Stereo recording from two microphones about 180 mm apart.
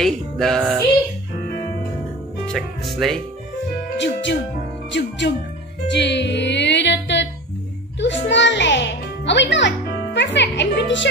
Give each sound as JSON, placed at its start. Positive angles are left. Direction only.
{"t": 0.0, "sound": "music", "side_deg": 0}
{"t": 2.4, "sound": "speech", "side_deg": 0}
{"t": 4.0, "sound": "speech", "side_deg": 80}
{"t": 5.9, "sound": "music", "side_deg": 70}
{"t": 8.0, "sound": "a child's voice", "side_deg": 80}